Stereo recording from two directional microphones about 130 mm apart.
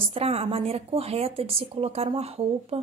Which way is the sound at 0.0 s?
50° right (ahead or behind).